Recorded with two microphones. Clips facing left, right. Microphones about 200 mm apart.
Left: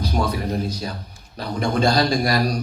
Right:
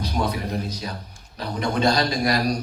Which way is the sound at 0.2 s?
45° left (ahead or behind).